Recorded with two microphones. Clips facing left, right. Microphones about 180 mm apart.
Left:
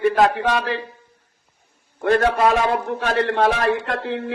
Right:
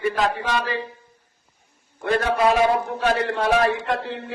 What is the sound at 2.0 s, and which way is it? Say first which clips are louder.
A man's voice: left 3 dB; 50° left (ahead or behind).